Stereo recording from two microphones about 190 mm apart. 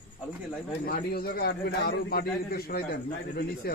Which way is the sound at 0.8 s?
50° left (ahead or behind).